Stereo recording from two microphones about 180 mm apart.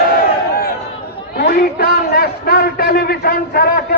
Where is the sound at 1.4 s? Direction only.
60° left (ahead or behind).